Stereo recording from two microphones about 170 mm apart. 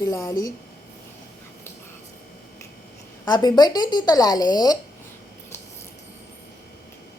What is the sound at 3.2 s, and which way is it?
Speech, 25° left (ahead or behind).